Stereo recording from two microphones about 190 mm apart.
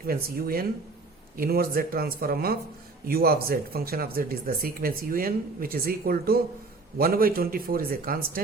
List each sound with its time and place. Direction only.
0.0 s speech: 50° right (ahead or behind)